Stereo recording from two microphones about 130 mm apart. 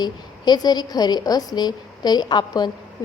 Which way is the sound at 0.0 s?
30° left (ahead or behind).